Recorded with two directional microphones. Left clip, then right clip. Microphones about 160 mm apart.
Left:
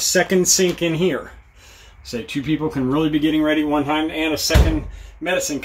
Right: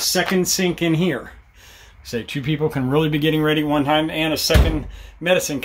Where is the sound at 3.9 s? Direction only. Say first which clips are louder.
Right 2 dB; 90° right.